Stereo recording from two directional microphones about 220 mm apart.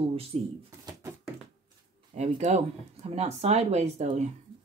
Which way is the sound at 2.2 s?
30° right (ahead or behind).